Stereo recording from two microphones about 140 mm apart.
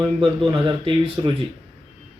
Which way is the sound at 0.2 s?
35° right (ahead or behind).